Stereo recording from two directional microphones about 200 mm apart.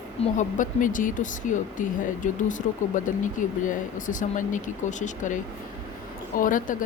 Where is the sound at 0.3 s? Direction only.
40° left (ahead or behind).